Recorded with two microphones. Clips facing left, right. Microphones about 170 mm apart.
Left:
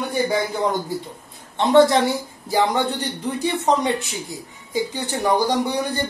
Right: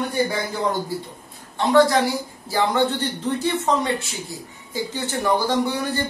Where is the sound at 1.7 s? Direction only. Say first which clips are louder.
Left 2 dB; 25° left (ahead or behind).